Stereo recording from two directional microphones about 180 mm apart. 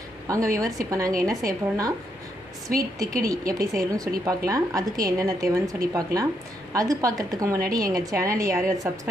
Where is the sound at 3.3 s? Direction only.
20° right (ahead or behind).